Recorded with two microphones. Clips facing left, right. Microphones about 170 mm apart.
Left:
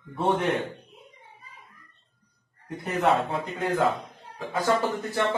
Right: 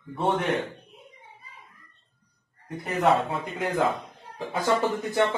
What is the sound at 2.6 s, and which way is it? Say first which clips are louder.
Speech: right 1 dB; centre (ahead or behind).